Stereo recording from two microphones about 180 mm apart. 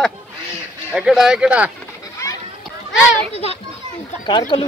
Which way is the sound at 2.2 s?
15° left (ahead or behind).